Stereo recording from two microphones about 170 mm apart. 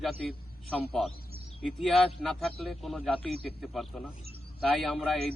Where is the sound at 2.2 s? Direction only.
Centre (ahead or behind).